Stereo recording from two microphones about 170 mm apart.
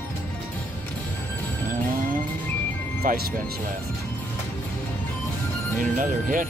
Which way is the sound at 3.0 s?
55° right (ahead or behind).